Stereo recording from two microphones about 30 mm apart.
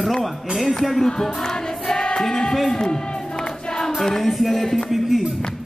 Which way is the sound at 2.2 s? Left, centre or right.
Centre.